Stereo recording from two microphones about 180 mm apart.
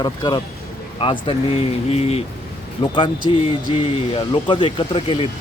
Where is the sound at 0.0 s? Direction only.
25° left (ahead or behind).